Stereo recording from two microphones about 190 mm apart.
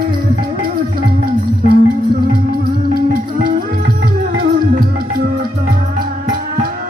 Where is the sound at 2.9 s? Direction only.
50° right (ahead or behind).